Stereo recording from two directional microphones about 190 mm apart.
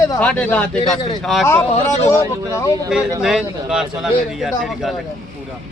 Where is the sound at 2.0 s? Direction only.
15° left (ahead or behind).